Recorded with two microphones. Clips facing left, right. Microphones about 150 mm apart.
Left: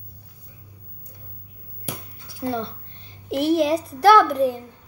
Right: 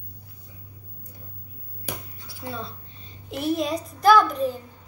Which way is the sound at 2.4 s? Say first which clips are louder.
Left 8 dB; 65° left (ahead or behind).